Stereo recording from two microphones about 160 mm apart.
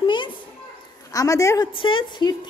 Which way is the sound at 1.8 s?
30° left (ahead or behind).